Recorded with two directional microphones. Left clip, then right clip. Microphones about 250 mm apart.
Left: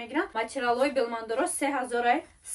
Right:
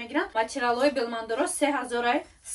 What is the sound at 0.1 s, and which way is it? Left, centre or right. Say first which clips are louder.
A woman's voice: right 3 dB; centre.